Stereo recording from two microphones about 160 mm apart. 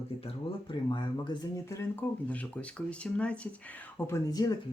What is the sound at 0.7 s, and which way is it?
Speech, 30° left (ahead or behind).